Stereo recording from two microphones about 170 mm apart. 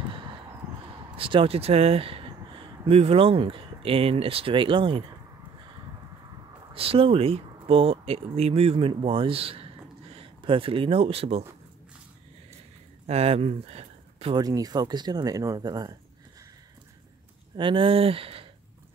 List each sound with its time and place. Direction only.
1.1 s speech: 30° right (ahead or behind)
6.7 s speech: 35° right (ahead or behind)
13.0 s speech: 35° right (ahead or behind)
14.3 s speech: 20° right (ahead or behind)
17.6 s speech: 30° right (ahead or behind)